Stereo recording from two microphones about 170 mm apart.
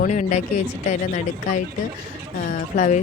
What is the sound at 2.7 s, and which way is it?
Speech, 50° left (ahead or behind).